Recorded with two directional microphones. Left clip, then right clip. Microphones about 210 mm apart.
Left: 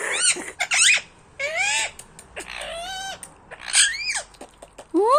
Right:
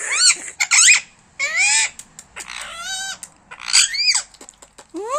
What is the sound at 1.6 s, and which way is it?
Owl, 50° right (ahead or behind).